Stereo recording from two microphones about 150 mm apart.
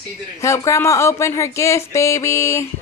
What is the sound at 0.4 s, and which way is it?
Speech, 20° left (ahead or behind).